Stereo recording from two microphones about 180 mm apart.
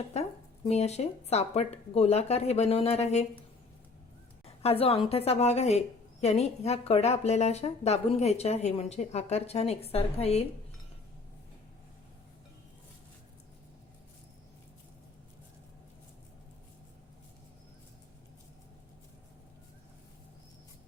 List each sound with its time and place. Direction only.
0.7 s a woman's voice: 35° left (ahead or behind)
4.4 s a woman's voice: 35° left (ahead or behind)